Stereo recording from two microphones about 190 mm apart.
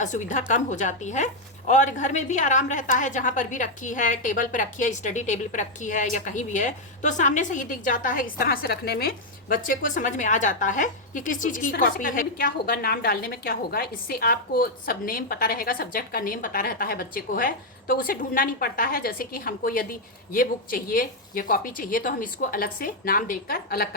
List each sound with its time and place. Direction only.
0.0 s a woman's voice: 40° left (ahead or behind)